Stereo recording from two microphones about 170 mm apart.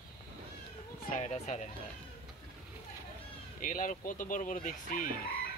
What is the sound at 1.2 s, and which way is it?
Speech, 40° left (ahead or behind).